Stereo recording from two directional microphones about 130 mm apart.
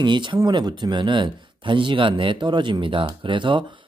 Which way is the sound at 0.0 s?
35° right (ahead or behind).